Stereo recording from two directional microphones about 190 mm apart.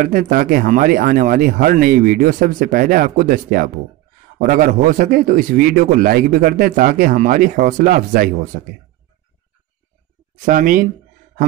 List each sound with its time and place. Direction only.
0.0 s speech: 45° right (ahead or behind)
10.4 s speech: 45° right (ahead or behind)